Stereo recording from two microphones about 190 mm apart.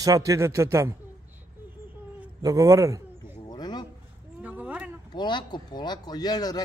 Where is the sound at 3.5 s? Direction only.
20° left (ahead or behind).